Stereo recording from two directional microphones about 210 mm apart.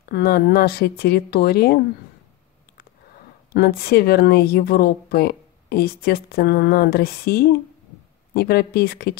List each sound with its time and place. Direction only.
0.1 s speech: 45° left (ahead or behind)
3.5 s speech: 45° left (ahead or behind)